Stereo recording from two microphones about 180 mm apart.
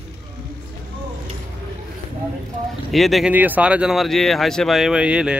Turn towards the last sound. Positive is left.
turn(degrees=-5)  # may be behind; listen again after turning